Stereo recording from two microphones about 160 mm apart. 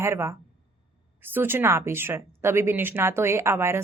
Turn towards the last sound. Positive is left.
turn(degrees=-15)  # may be behind; listen again after turning